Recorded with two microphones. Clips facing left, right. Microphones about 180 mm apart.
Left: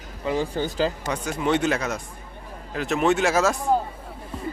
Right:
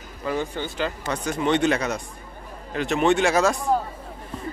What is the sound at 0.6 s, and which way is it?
Speech, 35° left (ahead or behind).